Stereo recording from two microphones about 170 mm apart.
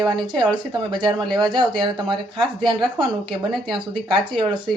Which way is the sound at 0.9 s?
25° right (ahead or behind).